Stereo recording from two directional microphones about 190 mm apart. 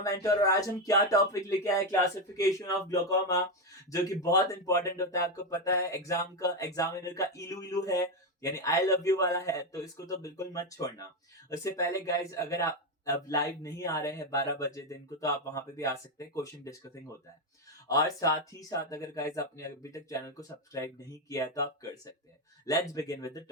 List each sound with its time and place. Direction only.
0.0 s speech: 15° left (ahead or behind)